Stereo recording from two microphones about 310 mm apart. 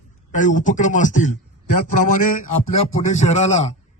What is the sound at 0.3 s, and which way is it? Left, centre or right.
A man's voice, left.